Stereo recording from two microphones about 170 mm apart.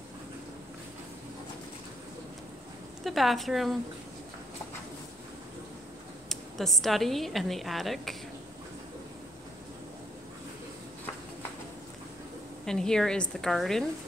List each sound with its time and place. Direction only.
3.0 s a woman's voice: centre (ahead or behind)
6.2 s a woman's voice: centre (ahead or behind)
12.6 s a woman's voice: 5° left (ahead or behind)